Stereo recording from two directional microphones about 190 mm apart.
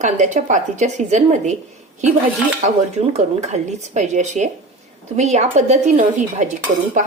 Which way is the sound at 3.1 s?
35° right (ahead or behind).